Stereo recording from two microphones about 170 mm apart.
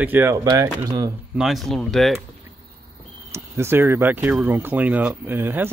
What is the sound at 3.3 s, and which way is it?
Speech, 15° right (ahead or behind).